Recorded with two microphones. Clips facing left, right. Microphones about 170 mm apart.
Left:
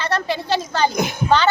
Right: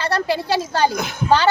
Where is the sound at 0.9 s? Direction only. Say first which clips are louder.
Left 3 dB; 15° left (ahead or behind).